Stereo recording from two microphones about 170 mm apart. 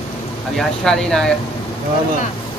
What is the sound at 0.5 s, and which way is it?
Speech, 5° left (ahead or behind).